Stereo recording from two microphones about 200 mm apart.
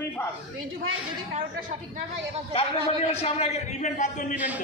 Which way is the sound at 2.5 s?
30° left (ahead or behind).